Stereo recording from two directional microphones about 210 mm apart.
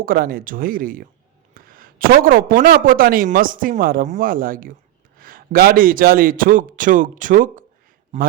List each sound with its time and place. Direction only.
0.0 s speech: 45° right (ahead or behind)